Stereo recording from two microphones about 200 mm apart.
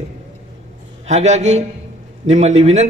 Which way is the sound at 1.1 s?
35° right (ahead or behind).